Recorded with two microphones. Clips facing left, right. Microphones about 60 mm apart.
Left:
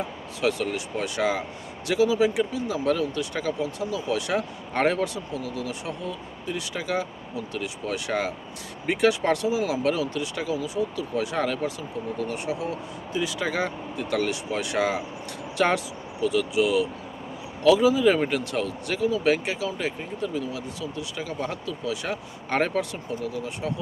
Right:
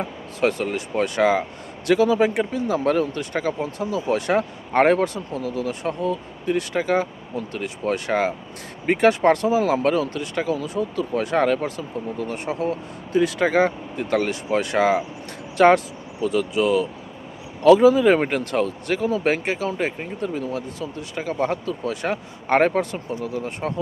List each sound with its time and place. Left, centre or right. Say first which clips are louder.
0.4 s speech: right 4 dB; right